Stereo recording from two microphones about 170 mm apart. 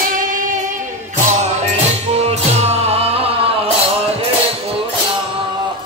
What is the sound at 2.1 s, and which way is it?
Music, 40° right (ahead or behind).